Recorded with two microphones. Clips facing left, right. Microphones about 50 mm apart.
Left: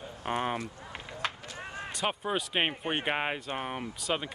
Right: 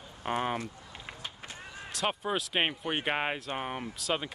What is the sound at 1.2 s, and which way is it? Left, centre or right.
Run, left.